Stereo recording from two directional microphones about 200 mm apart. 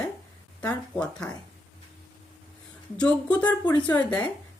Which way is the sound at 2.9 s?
5° left (ahead or behind).